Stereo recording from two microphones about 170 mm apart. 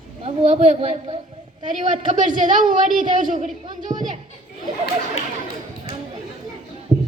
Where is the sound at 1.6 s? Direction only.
50° right (ahead or behind).